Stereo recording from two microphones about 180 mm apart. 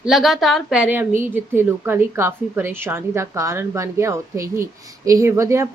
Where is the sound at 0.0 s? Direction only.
Centre (ahead or behind).